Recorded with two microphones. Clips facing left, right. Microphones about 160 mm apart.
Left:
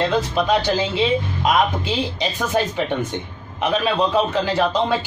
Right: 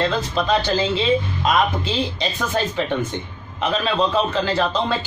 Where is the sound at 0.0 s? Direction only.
15° left (ahead or behind).